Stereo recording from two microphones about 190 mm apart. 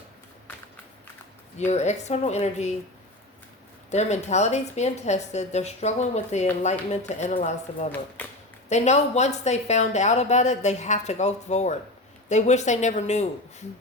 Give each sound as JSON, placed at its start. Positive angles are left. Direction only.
{"t": 1.5, "sound": "a woman's voice", "side_deg": 35}
{"t": 3.9, "sound": "a woman's voice", "side_deg": 35}
{"t": 8.2, "sound": "speech", "side_deg": 10}
{"t": 8.7, "sound": "a woman's voice", "side_deg": 35}